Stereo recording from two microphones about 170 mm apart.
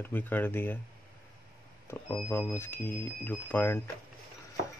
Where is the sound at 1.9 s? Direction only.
15° left (ahead or behind).